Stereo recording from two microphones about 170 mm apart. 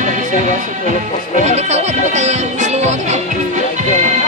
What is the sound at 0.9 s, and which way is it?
Speech, 45° right (ahead or behind).